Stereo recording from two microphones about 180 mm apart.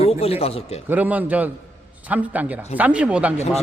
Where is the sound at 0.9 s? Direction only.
10° right (ahead or behind).